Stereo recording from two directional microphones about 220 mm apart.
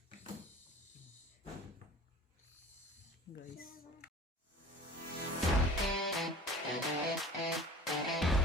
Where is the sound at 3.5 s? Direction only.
40° left (ahead or behind).